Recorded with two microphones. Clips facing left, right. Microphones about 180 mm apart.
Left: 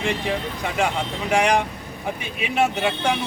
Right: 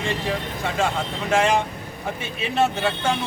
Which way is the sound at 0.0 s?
15° left (ahead or behind).